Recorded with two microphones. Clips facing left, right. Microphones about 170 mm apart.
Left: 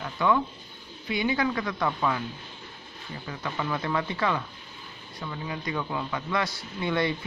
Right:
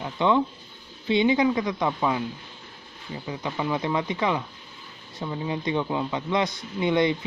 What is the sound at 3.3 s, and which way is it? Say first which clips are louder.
Speech: right 3 dB; 20° right (ahead or behind).